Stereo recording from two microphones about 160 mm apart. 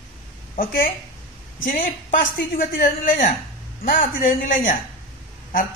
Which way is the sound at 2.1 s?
55° left (ahead or behind).